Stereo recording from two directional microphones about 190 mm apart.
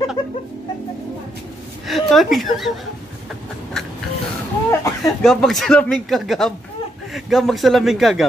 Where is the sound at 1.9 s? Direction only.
Centre (ahead or behind).